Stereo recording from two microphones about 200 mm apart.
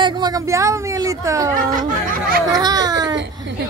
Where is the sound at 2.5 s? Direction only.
20° right (ahead or behind).